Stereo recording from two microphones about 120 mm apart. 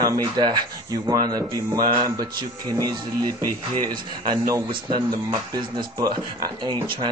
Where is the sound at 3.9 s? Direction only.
30° right (ahead or behind).